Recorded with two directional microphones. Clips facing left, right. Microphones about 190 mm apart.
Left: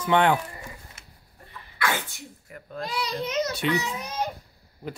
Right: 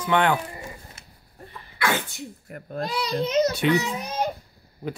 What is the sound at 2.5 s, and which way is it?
Speech, 50° right (ahead or behind).